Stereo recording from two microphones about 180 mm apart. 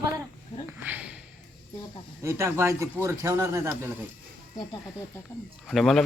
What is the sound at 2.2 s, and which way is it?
Speech, 15° right (ahead or behind).